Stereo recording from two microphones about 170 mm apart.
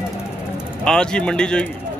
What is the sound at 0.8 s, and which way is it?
Speech, 5° left (ahead or behind).